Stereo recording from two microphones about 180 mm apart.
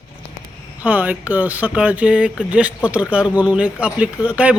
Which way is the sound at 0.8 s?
10° right (ahead or behind).